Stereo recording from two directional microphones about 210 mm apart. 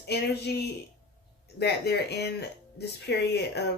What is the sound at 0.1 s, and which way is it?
Speech, 50° left (ahead or behind).